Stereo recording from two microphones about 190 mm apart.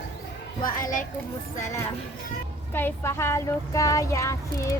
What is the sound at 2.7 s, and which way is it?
Speech, 10° left (ahead or behind).